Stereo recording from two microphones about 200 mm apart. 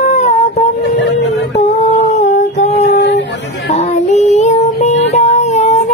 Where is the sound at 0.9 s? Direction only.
60° left (ahead or behind).